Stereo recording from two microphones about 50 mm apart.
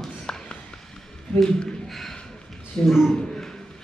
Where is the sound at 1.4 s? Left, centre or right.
Centre.